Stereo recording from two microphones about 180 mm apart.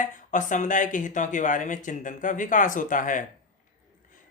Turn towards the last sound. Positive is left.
turn(degrees=45)  # may be behind; listen again after turning